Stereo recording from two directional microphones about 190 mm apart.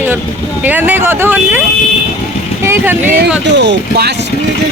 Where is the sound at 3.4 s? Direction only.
65° right (ahead or behind).